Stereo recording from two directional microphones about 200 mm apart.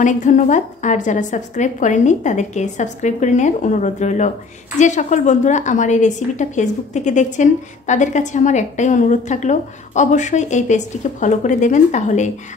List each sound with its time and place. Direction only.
0.0 s a woman's voice: 40° left (ahead or behind)